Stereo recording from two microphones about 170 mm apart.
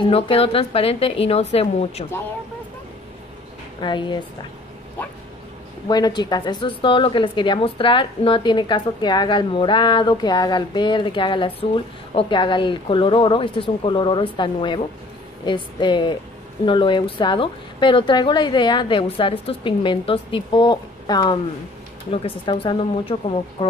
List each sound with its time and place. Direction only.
0.0 s a woman's voice: 35° left (ahead or behind)
3.8 s a woman's voice: 25° left (ahead or behind)
5.9 s a woman's voice: 25° left (ahead or behind)